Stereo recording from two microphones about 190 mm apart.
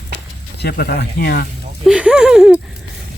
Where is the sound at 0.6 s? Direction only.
55° left (ahead or behind).